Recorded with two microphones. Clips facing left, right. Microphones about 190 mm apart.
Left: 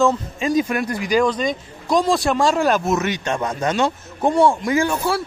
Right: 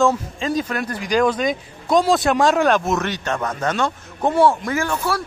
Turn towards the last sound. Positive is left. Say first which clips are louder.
# left 3 dB
turn(degrees=15)  # may be behind; listen again after turning